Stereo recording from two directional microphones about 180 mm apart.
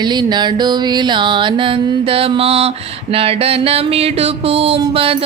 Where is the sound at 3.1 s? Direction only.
30° right (ahead or behind).